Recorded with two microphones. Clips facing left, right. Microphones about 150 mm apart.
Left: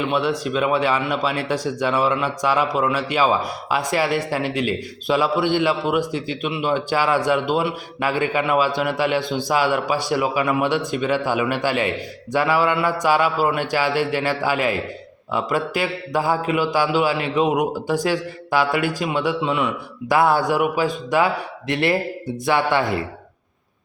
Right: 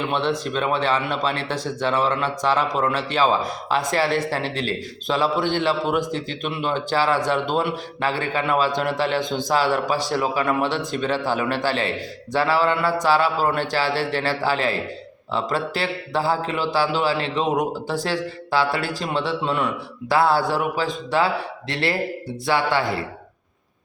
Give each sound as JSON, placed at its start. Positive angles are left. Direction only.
{"t": 0.1, "sound": "a man's voice", "side_deg": 10}